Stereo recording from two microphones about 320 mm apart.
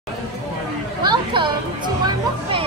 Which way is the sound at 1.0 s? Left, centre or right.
Centre.